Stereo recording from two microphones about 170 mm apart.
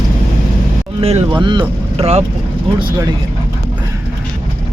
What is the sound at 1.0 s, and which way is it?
Speech, 35° right (ahead or behind).